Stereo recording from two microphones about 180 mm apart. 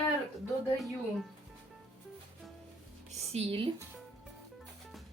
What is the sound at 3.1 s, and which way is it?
Speech, 35° right (ahead or behind).